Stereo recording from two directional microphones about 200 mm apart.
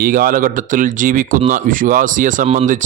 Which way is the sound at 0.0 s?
45° right (ahead or behind).